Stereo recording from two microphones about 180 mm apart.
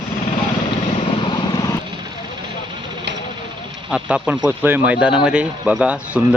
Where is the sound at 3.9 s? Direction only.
5° right (ahead or behind).